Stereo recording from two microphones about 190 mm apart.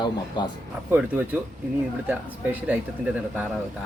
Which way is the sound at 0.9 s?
10° right (ahead or behind).